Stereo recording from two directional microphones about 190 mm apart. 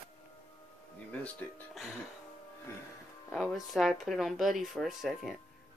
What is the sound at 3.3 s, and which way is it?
Speech, centre (ahead or behind).